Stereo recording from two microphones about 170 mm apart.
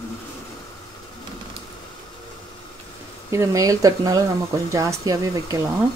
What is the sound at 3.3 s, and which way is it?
Speech, 20° right (ahead or behind).